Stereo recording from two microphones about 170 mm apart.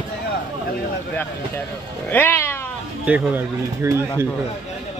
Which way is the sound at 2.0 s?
10° left (ahead or behind).